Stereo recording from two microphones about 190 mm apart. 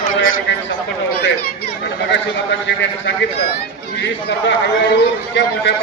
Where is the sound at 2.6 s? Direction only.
70° left (ahead or behind).